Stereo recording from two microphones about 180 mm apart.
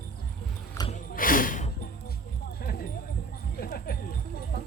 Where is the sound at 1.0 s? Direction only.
50° left (ahead or behind).